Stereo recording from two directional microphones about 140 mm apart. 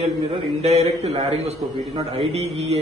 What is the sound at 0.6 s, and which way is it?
A man's voice, 50° right (ahead or behind).